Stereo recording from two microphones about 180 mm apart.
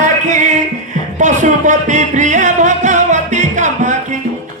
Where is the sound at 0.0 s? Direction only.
45° right (ahead or behind).